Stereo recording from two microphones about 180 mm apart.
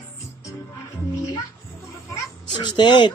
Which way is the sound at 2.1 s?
25° left (ahead or behind).